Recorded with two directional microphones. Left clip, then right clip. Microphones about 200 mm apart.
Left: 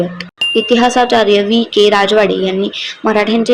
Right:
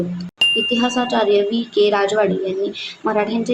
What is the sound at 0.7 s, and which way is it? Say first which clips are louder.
A woman's voice: left 9 dB; 25° left (ahead or behind).